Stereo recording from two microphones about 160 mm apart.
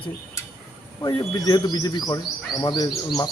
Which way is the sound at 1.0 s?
25° left (ahead or behind).